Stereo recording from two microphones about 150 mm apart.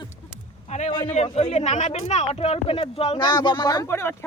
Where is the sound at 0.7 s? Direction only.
50° left (ahead or behind).